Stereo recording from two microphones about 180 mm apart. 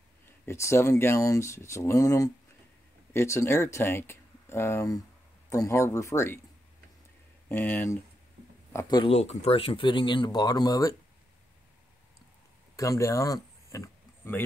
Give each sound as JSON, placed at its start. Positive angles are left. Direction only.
{"t": 0.5, "sound": "speech", "side_deg": 15}
{"t": 7.4, "sound": "speech", "side_deg": 10}
{"t": 8.7, "sound": "speech", "side_deg": 25}
{"t": 9.1, "sound": "speech", "side_deg": 35}
{"t": 12.7, "sound": "oink", "side_deg": 15}